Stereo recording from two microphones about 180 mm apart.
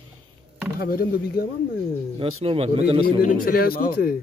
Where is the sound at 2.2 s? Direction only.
30° right (ahead or behind).